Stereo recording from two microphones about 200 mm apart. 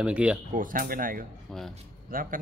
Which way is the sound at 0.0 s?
5° right (ahead or behind).